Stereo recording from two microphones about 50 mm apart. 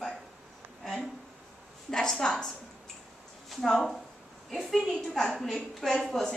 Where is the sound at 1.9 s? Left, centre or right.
Centre.